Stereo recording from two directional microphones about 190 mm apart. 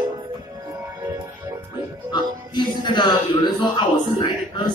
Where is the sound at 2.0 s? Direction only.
25° left (ahead or behind).